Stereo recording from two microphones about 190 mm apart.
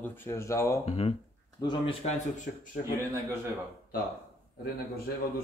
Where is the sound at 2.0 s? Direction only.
40° left (ahead or behind).